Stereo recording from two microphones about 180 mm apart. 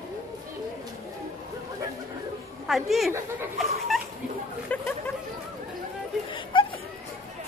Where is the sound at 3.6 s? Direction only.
Centre (ahead or behind).